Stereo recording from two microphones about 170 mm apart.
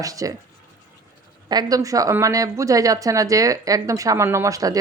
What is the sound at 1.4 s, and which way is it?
Speech, 20° right (ahead or behind).